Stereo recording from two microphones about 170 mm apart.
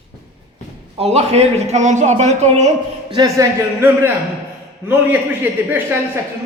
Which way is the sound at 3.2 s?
15° right (ahead or behind).